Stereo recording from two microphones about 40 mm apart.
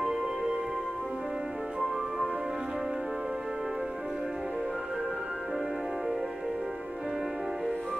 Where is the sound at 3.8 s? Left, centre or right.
Centre.